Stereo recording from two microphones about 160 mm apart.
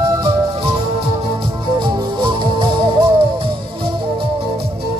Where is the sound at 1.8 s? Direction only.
30° right (ahead or behind).